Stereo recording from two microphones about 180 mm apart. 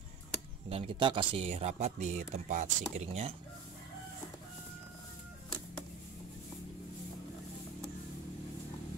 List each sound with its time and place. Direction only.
0.7 s speech: 30° right (ahead or behind)